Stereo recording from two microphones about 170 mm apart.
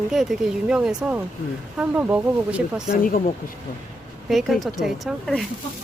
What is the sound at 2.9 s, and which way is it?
Speech, 60° left (ahead or behind).